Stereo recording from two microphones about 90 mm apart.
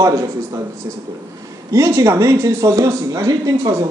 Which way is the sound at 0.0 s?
40° right (ahead or behind).